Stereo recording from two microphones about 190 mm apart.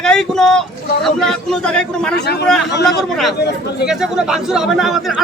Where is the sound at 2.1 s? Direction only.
60° left (ahead or behind).